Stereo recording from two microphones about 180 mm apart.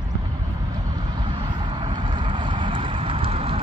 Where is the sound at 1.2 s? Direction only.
25° right (ahead or behind).